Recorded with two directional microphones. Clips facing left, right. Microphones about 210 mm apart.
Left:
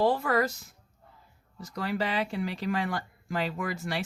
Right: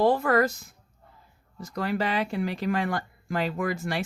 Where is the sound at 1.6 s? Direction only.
50° right (ahead or behind).